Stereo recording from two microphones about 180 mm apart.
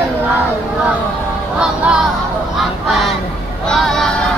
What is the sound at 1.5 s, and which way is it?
Music, 5° right (ahead or behind).